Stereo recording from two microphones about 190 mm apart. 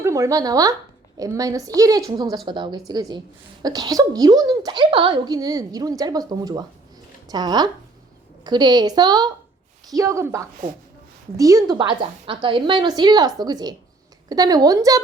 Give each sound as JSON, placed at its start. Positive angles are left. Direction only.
{"t": 0.0, "sound": "a woman's voice", "side_deg": -15}